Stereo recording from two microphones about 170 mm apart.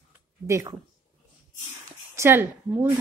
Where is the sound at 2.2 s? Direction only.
15° right (ahead or behind).